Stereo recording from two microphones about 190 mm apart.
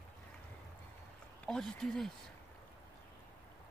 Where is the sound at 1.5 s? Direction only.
Centre (ahead or behind).